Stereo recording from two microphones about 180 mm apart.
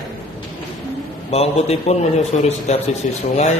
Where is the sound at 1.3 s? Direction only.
35° left (ahead or behind).